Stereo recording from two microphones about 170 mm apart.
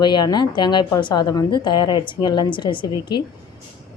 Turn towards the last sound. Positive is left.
turn(degrees=25)  # may be behind; listen again after turning